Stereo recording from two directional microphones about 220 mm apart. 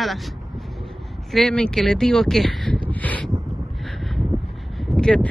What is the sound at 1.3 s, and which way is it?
Speech, 5° left (ahead or behind).